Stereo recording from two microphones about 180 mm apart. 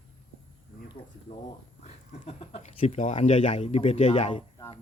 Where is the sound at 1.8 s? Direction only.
35° left (ahead or behind).